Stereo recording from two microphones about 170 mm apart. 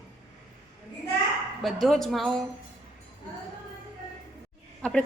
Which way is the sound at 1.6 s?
Centre (ahead or behind).